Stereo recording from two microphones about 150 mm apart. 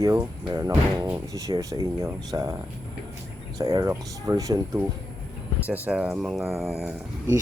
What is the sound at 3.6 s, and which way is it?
Speech, 25° right (ahead or behind).